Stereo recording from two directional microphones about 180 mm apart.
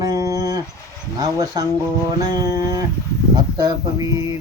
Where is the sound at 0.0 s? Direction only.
20° right (ahead or behind).